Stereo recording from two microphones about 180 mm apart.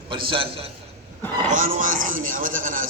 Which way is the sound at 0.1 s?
30° right (ahead or behind).